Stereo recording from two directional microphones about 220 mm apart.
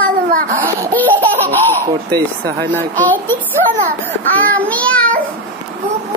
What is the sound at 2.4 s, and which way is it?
Speech, 50° right (ahead or behind).